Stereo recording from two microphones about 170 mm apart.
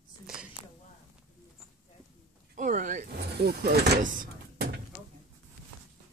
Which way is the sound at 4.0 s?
50° right (ahead or behind).